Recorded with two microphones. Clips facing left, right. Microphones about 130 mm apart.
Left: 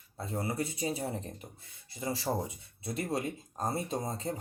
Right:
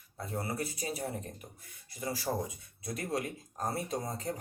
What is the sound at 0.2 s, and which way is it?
Speech, 25° left (ahead or behind).